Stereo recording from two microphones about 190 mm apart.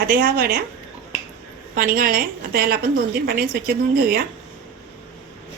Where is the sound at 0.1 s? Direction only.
50° right (ahead or behind).